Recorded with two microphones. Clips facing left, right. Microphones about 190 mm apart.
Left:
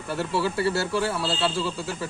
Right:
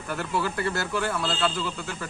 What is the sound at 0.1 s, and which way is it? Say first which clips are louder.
Speech: left 2 dB; 30° left (ahead or behind).